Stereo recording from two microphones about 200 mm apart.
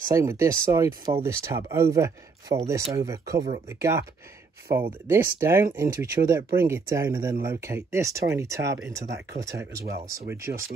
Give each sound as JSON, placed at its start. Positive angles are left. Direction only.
{"t": 0.1, "sound": "speech", "side_deg": -15}
{"t": 5.0, "sound": "speech", "side_deg": -10}